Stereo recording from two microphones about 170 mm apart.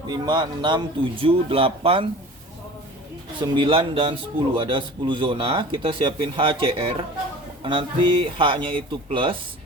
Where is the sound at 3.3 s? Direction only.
30° right (ahead or behind).